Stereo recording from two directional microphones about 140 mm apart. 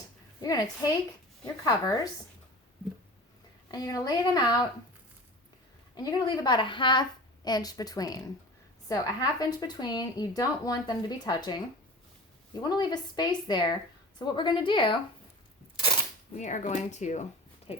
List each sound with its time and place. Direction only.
0.4 s speech: 25° left (ahead or behind)
3.7 s speech: 25° left (ahead or behind)
5.9 s a woman's voice: 30° left (ahead or behind)
16.4 s speech: 55° left (ahead or behind)
17.7 s speech: 45° left (ahead or behind)